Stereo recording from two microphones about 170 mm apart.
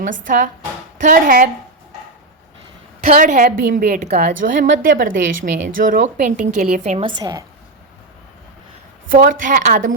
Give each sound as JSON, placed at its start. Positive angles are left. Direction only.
{"t": 0.0, "sound": "a woman's voice", "side_deg": -50}
{"t": 3.0, "sound": "a woman's voice", "side_deg": -50}
{"t": 7.2, "sound": "a woman's voice", "side_deg": -20}
{"t": 9.0, "sound": "a woman's voice", "side_deg": -55}